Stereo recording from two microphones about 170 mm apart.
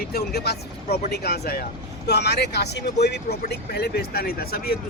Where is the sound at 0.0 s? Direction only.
65° left (ahead or behind).